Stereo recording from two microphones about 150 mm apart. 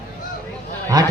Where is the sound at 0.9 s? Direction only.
25° right (ahead or behind).